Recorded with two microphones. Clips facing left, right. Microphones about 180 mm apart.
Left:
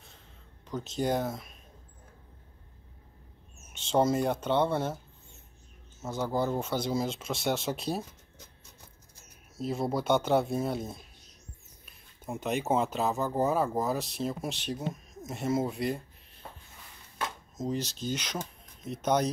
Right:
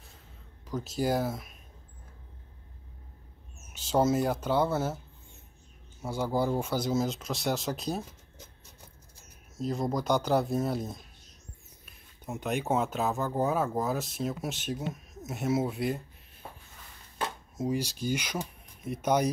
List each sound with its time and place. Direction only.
0.7 s speech: 5° right (ahead or behind)
3.7 s speech: 5° right (ahead or behind)
9.6 s speech: 5° left (ahead or behind)
12.4 s speech: centre (ahead or behind)
17.6 s speech: 10° right (ahead or behind)